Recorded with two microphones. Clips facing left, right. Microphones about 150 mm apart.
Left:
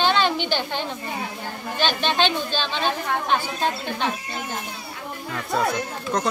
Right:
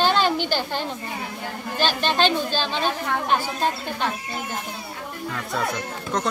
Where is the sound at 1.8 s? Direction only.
5° right (ahead or behind).